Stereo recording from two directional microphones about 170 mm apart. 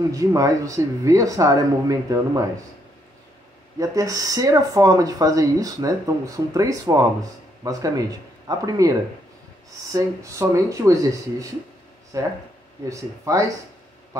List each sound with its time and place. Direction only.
0.1 s speech: 20° right (ahead or behind)
3.8 s speech: 20° right (ahead or behind)
9.9 s speech: 20° right (ahead or behind)